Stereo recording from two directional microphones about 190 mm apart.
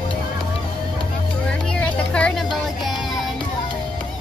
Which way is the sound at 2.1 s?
5° left (ahead or behind).